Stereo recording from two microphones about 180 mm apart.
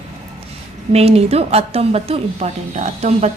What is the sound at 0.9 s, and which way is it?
A woman's voice, 35° right (ahead or behind).